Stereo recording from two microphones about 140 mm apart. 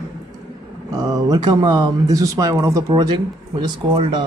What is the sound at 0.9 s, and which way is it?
Speech, 25° right (ahead or behind).